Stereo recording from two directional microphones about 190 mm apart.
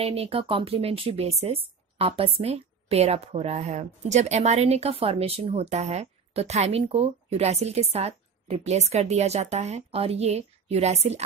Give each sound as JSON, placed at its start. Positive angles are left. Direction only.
{"t": 0.0, "sound": "speech", "side_deg": -30}